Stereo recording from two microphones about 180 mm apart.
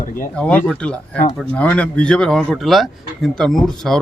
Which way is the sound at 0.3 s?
5° left (ahead or behind).